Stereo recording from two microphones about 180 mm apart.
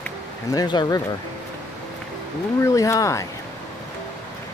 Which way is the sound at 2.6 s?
15° left (ahead or behind).